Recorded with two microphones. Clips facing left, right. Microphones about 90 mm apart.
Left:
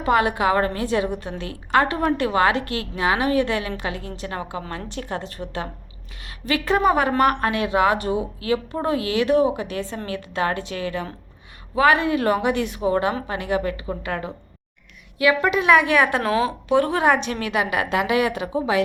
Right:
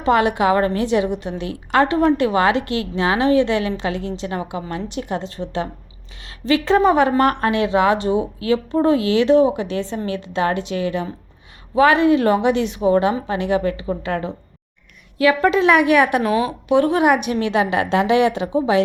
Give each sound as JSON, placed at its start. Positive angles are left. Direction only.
{"t": 0.0, "sound": "a woman's voice", "side_deg": -25}
{"t": 17.5, "sound": "a woman's voice", "side_deg": -30}